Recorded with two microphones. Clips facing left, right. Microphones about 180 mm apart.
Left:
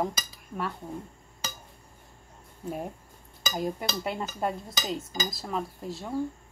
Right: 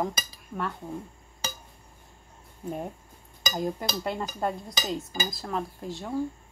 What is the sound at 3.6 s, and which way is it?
Dishes, 5° left (ahead or behind).